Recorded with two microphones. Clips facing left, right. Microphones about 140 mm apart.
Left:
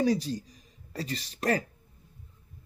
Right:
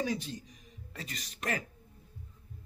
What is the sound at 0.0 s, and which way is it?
Speech, 35° left (ahead or behind).